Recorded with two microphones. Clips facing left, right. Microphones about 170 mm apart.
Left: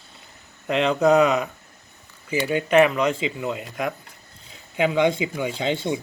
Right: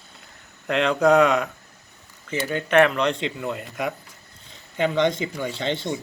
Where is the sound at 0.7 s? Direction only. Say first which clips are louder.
Even; centre (ahead or behind).